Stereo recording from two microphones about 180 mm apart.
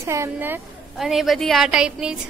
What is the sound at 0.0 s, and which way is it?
Speech, 15° right (ahead or behind).